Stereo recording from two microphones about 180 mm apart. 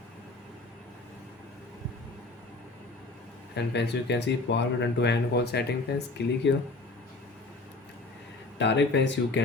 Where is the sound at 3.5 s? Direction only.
70° left (ahead or behind).